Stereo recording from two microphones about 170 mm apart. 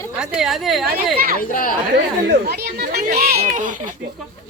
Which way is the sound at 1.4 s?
55° left (ahead or behind).